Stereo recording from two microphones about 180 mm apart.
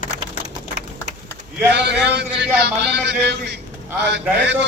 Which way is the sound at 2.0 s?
70° right (ahead or behind).